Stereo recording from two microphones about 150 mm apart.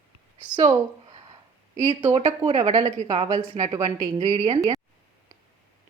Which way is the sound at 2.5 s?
50° right (ahead or behind).